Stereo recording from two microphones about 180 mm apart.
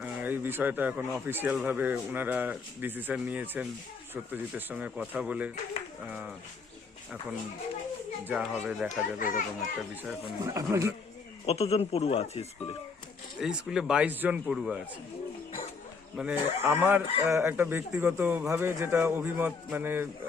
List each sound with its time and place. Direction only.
0.0 s speech: 10° right (ahead or behind)
8.2 s speech: 5° right (ahead or behind)
9.1 s a child's voice: 50° left (ahead or behind)
9.6 s speech: 5° right (ahead or behind)
10.4 s speech: 20° right (ahead or behind)
11.4 s speech: 35° left (ahead or behind)
13.4 s speech: 5° right (ahead or behind)
16.1 s speech: 10° right (ahead or behind)